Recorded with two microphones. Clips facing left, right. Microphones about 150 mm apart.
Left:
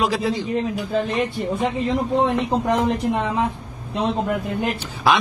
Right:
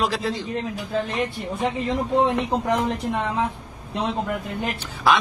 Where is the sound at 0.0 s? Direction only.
10° left (ahead or behind).